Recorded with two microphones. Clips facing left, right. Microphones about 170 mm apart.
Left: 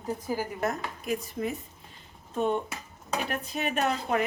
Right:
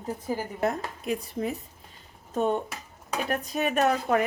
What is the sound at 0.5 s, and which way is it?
Speech, 30° right (ahead or behind).